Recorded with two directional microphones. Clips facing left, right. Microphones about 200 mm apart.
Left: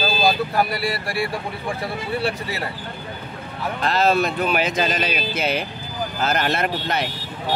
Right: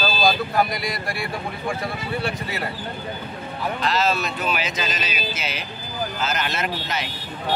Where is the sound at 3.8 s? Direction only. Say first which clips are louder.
Left 5 dB; 55° left (ahead or behind).